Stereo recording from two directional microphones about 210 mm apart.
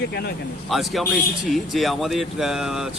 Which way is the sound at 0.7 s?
Centre (ahead or behind).